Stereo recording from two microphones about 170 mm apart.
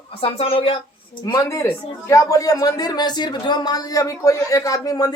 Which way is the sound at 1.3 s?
20° left (ahead or behind).